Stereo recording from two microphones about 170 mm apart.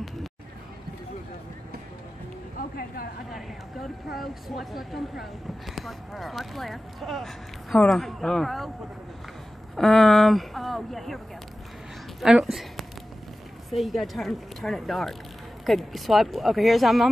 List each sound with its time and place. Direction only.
2.5 s a sound: 60° left (ahead or behind)
4.1 s speech: centre (ahead or behind)
9.8 s speech: centre (ahead or behind)
12.2 s speech: centre (ahead or behind)